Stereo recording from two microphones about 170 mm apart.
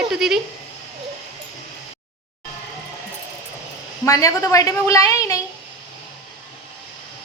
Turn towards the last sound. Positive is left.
turn(degrees=20)  # may be behind; listen again after turning